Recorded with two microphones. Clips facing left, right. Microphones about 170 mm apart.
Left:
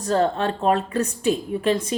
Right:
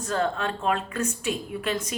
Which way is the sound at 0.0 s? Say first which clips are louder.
Left 6 dB; 35° left (ahead or behind).